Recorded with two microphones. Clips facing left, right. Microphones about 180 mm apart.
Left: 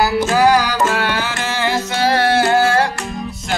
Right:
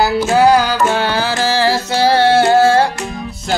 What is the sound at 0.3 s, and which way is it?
Music, 25° right (ahead or behind).